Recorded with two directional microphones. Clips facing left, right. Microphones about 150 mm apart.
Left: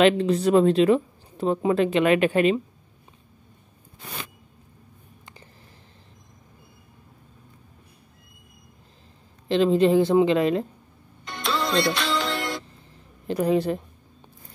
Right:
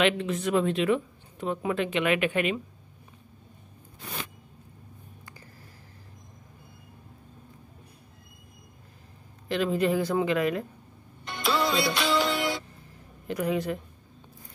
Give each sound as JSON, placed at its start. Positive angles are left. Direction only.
{"t": 0.0, "sound": "speech", "side_deg": 35}
{"t": 9.5, "sound": "speech", "side_deg": 25}
{"t": 11.4, "sound": "music", "side_deg": -5}
{"t": 13.3, "sound": "speech", "side_deg": 30}